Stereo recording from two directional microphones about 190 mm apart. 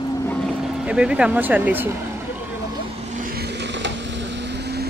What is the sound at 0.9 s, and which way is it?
Speech, 5° right (ahead or behind).